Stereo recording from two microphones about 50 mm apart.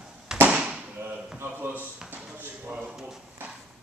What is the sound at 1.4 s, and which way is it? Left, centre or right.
Speech, right.